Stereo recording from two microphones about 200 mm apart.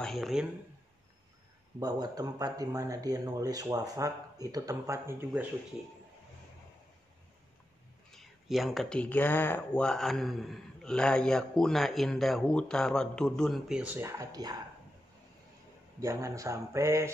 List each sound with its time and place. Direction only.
0.0 s speech: centre (ahead or behind)
1.8 s speech: 20° right (ahead or behind)
8.1 s speech: centre (ahead or behind); by 14.6 s 20° right (ahead or behind)
16.0 s speech: 15° right (ahead or behind)